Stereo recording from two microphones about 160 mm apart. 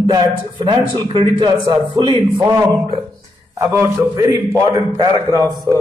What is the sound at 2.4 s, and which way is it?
A man's voice, 20° right (ahead or behind).